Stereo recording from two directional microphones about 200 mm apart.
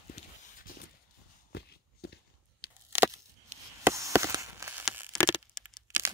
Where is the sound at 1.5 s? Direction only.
55° left (ahead or behind).